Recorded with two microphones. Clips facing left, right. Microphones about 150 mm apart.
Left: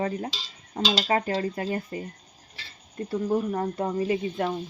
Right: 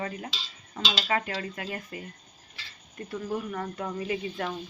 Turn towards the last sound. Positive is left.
turn(degrees=30)  # may be behind; listen again after turning